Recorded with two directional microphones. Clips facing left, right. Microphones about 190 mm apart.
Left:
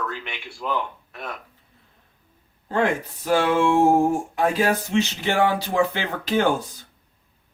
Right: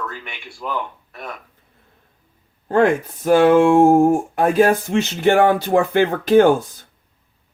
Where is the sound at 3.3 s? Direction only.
50° right (ahead or behind).